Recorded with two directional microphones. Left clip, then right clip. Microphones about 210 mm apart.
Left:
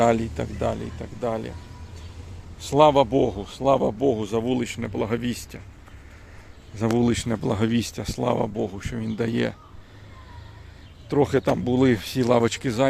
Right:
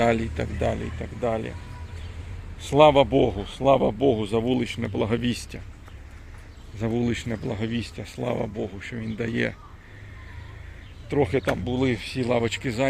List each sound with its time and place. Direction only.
0.0 s speech: 10° left (ahead or behind)
2.6 s speech: centre (ahead or behind)
6.7 s speech: 20° left (ahead or behind)
11.1 s speech: 20° left (ahead or behind)
11.6 s speech: 45° left (ahead or behind); by 12.9 s 20° left (ahead or behind)